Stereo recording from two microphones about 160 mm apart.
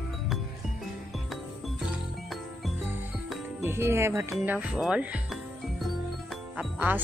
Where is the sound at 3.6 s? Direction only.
15° right (ahead or behind).